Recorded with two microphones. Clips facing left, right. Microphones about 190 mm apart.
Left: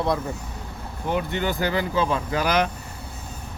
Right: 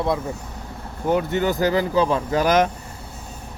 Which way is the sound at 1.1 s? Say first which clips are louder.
Right 5 dB; 45° right (ahead or behind).